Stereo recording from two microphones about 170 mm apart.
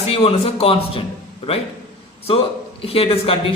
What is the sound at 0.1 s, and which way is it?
Speech, 35° left (ahead or behind).